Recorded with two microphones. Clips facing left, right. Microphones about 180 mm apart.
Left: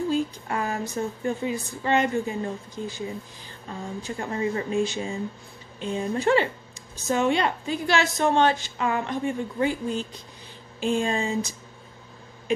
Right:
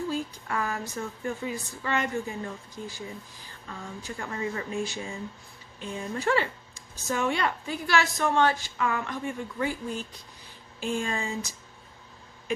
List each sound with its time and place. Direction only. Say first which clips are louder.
0.1 s speech: left 5 dB; 25° left (ahead or behind)